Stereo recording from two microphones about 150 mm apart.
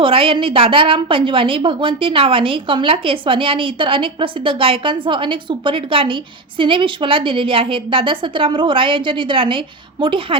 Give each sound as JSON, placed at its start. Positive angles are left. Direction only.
{"t": 0.0, "sound": "a woman's voice", "side_deg": -35}